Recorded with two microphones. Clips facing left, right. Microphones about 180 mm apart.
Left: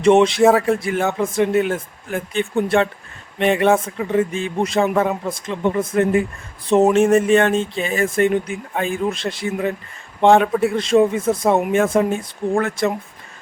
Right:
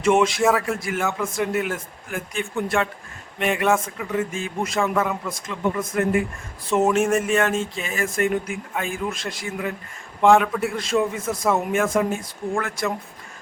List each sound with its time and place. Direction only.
0.0 s speech: 30° left (ahead or behind)